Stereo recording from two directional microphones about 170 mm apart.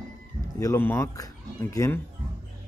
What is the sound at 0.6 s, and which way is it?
Speech, 15° left (ahead or behind).